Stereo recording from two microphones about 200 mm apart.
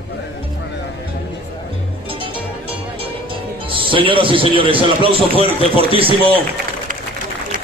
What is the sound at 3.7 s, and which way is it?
A man's voice, 25° right (ahead or behind).